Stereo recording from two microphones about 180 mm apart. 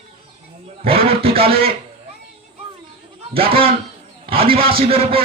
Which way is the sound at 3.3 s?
30° right (ahead or behind).